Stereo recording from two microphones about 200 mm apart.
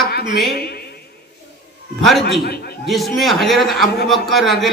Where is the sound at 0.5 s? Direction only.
50° left (ahead or behind).